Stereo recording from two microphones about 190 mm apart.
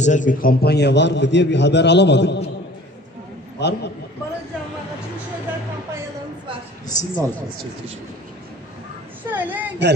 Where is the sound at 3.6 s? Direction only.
65° left (ahead or behind).